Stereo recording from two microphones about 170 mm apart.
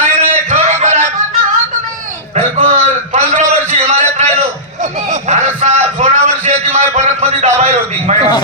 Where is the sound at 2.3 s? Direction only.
45° right (ahead or behind).